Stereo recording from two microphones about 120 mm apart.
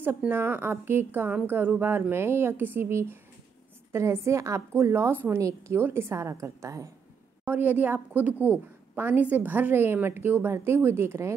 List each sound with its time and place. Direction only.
0.0 s a woman's voice: 15° right (ahead or behind)
7.4 s a woman's voice: 15° right (ahead or behind)